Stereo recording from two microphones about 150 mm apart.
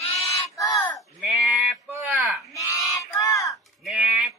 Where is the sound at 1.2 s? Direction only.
Centre (ahead or behind).